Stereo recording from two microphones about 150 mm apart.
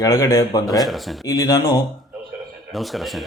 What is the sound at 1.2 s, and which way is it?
Speech, 25° left (ahead or behind).